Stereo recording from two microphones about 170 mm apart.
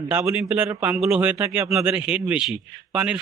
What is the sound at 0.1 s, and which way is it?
A man's voice, 15° right (ahead or behind).